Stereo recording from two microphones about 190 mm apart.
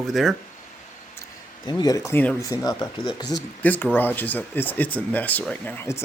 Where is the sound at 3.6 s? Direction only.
10° left (ahead or behind).